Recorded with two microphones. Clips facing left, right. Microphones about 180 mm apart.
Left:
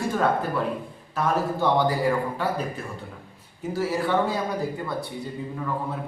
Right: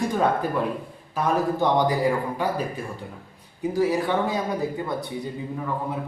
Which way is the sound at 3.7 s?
15° right (ahead or behind).